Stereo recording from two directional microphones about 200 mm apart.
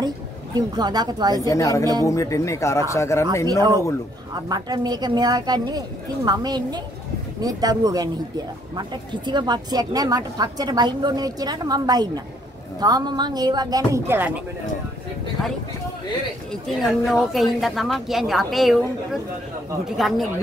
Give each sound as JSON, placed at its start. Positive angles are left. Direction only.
{"t": 0.6, "sound": "speech", "side_deg": -20}
{"t": 1.4, "sound": "speech", "side_deg": 15}
{"t": 3.4, "sound": "speech", "side_deg": -20}
{"t": 16.6, "sound": "speech", "side_deg": 0}
{"t": 20.0, "sound": "speech", "side_deg": 0}